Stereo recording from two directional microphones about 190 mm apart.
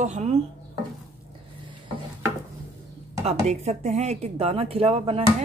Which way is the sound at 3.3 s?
35° right (ahead or behind).